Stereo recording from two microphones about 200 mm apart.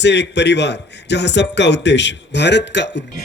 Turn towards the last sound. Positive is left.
turn(degrees=60)  # may be behind; listen again after turning